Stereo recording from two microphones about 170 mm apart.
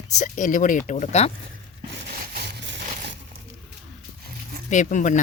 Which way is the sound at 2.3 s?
85° right.